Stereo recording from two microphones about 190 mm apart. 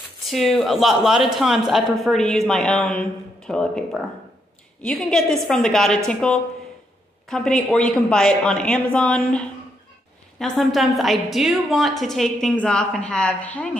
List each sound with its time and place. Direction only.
0.3 s a woman's voice: centre (ahead or behind)